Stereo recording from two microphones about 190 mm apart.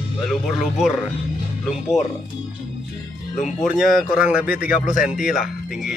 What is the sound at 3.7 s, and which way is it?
Speech, 5° right (ahead or behind).